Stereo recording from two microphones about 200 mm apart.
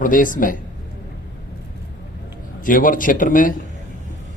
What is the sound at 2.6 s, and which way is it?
Speech, 40° left (ahead or behind).